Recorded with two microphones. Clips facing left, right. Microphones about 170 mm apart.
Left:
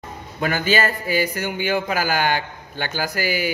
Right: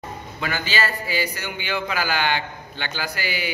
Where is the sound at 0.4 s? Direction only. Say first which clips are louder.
Left 5 dB; 50° left (ahead or behind).